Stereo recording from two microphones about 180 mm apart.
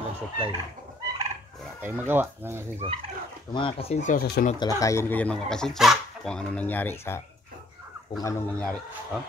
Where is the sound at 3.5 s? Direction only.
30° left (ahead or behind).